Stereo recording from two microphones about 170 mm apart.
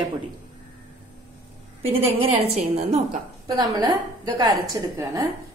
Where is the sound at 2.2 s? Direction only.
40° right (ahead or behind).